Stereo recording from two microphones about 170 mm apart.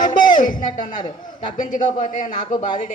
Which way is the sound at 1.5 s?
50° left (ahead or behind).